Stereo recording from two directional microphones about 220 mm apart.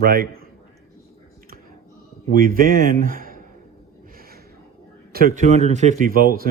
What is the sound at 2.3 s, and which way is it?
Speech, 40° right (ahead or behind).